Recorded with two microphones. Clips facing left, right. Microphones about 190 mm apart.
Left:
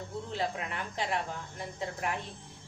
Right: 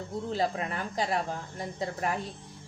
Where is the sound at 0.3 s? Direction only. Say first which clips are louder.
Right 5 dB; 40° right (ahead or behind).